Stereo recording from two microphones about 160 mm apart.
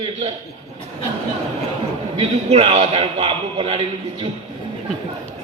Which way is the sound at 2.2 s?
40° right (ahead or behind).